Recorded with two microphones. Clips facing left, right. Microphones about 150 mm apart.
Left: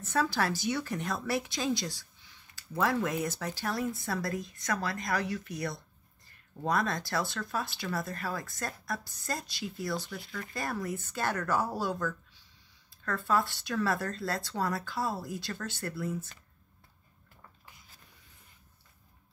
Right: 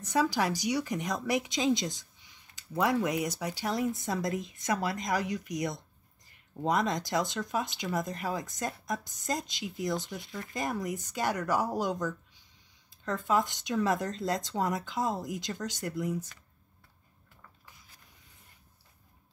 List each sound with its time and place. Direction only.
0.0 s speech: 15° right (ahead or behind)